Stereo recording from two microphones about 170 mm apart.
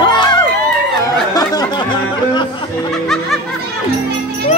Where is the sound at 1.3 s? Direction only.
20° left (ahead or behind).